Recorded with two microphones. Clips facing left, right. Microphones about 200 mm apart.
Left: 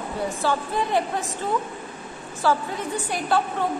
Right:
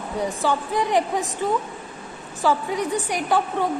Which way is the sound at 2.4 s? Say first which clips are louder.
Right 2 dB; 15° right (ahead or behind).